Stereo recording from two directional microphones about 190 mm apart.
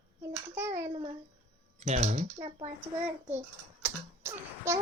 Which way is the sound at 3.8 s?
15° right (ahead or behind).